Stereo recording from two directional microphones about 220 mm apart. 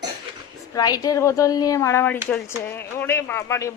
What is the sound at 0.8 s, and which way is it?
Speech, 15° left (ahead or behind).